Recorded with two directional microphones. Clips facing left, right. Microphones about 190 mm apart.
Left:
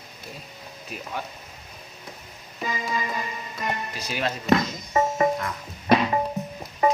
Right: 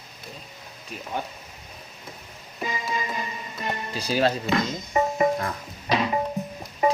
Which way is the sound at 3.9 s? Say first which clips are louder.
Right 6 dB; 30° right (ahead or behind).